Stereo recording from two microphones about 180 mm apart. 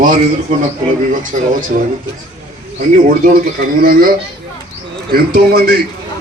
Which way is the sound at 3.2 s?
55° right (ahead or behind).